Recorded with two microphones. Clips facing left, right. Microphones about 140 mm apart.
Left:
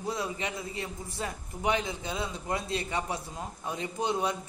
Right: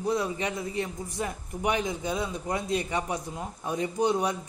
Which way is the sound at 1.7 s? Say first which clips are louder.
Right 2 dB; 15° right (ahead or behind).